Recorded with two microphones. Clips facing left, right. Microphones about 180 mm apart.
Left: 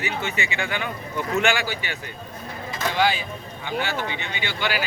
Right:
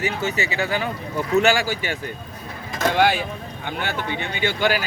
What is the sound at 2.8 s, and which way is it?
Speech, 60° right (ahead or behind).